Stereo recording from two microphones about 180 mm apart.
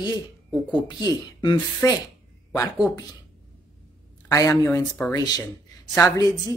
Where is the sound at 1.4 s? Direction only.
20° left (ahead or behind).